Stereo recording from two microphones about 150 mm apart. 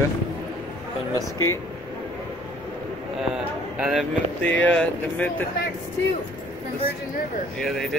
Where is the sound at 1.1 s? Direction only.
20° left (ahead or behind).